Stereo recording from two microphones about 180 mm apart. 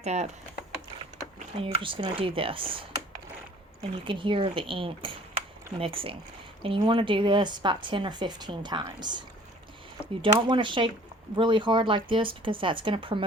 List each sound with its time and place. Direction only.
0.0 s speech: 40° right (ahead or behind)
1.5 s speech: 30° right (ahead or behind)
3.9 s speech: 25° right (ahead or behind)